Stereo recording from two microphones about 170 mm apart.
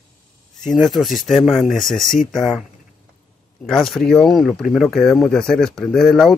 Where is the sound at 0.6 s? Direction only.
Centre (ahead or behind).